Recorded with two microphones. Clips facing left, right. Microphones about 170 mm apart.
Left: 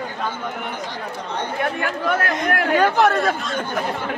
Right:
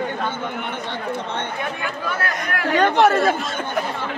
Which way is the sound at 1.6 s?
55° left (ahead or behind).